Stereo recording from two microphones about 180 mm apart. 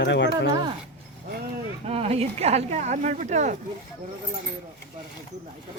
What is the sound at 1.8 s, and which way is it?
Speech, 35° right (ahead or behind).